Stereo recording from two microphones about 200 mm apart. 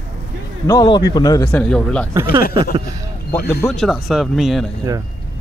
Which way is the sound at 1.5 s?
5° left (ahead or behind).